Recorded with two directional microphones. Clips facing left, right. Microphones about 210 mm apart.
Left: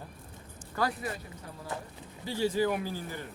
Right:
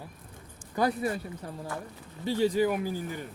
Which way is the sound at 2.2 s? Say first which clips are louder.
Right 3 dB; 20° right (ahead or behind).